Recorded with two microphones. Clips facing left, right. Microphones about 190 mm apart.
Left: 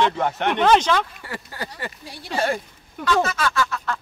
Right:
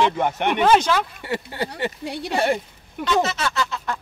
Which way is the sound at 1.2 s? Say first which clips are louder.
Right 6 dB; 25° right (ahead or behind).